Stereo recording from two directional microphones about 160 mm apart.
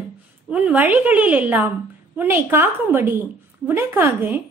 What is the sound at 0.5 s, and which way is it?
A woman's voice, 10° right (ahead or behind).